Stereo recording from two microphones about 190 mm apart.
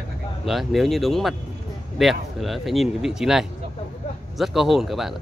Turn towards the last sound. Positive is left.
turn(degrees=0)  # may be behind; listen again after turning